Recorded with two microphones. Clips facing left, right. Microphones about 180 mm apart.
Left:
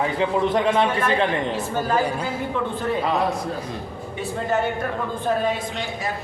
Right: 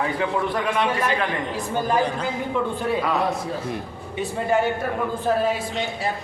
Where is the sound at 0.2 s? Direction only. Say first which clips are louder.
Left 3 dB; 20° left (ahead or behind).